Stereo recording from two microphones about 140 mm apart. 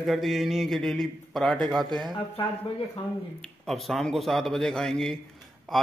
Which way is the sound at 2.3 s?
40° left (ahead or behind).